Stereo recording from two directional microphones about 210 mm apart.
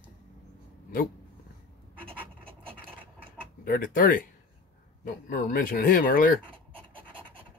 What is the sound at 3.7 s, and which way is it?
Speech, 40° left (ahead or behind).